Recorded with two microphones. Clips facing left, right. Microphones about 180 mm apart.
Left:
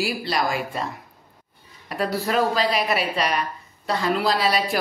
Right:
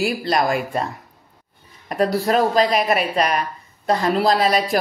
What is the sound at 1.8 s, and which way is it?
A woman's voice, 40° right (ahead or behind).